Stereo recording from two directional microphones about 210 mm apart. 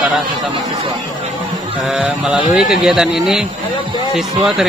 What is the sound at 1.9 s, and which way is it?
Speech, 5° right (ahead or behind).